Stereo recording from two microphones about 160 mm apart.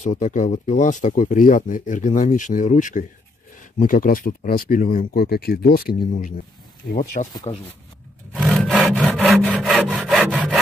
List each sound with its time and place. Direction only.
0.0 s speech: 50° left (ahead or behind)
7.5 s speech: 40° left (ahead or behind)
8.4 s sawing: centre (ahead or behind)